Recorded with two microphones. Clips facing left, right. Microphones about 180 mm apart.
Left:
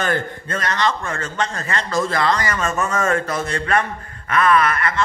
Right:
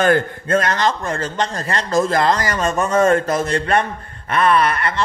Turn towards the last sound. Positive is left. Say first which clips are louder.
# right 1 dB
turn(degrees=-30)  # may be behind; listen again after turning